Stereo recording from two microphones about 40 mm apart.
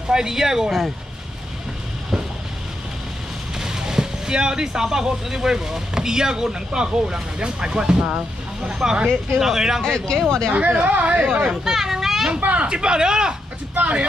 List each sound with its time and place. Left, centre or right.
0.1 s speech: centre
0.7 s speech: centre
3.5 s speech: centre
9.8 s speech: centre
10.5 s speech: right
11.6 s a sound: centre
12.4 s speech: right
12.6 s speech: right
13.7 s speech: right